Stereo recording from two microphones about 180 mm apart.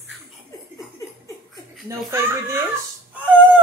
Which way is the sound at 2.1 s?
15° right (ahead or behind).